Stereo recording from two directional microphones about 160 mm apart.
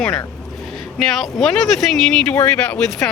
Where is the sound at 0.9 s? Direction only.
Centre (ahead or behind).